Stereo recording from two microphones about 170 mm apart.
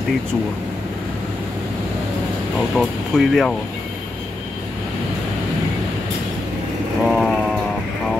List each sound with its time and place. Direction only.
2.7 s speech: centre (ahead or behind)
7.0 s vehicle: centre (ahead or behind)